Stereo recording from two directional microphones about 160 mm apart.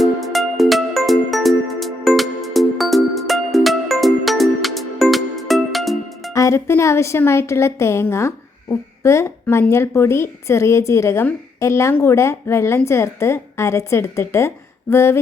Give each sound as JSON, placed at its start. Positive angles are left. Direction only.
{"t": 0.0, "sound": "music", "side_deg": 0}
{"t": 6.3, "sound": "a woman's voice", "side_deg": 20}